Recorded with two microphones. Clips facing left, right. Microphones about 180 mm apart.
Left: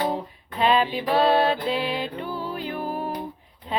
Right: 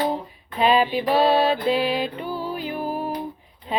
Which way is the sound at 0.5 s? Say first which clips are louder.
Right 2 dB; 10° right (ahead or behind).